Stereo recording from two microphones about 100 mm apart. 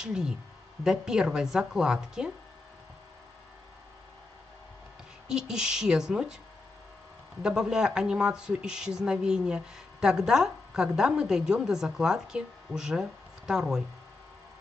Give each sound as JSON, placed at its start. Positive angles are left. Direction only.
{"t": 0.0, "sound": "speech", "side_deg": -5}
{"t": 5.3, "sound": "speech", "side_deg": -5}
{"t": 7.4, "sound": "speech", "side_deg": -5}